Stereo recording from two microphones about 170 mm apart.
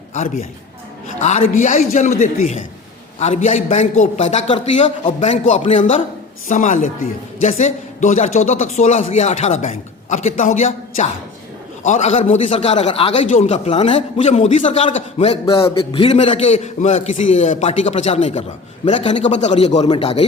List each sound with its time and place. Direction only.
1.2 s a man's voice: 40° left (ahead or behind)
6.5 s a man's voice: 45° left (ahead or behind)